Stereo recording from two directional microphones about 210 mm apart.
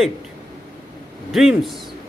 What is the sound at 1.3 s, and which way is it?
Speech, centre (ahead or behind).